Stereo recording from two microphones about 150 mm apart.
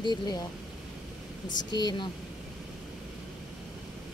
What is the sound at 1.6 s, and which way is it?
Speech, 30° left (ahead or behind).